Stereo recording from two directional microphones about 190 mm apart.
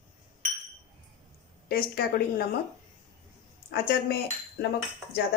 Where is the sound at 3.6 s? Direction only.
60° left (ahead or behind).